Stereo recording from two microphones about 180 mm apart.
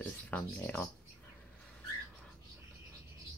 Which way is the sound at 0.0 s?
10° left (ahead or behind).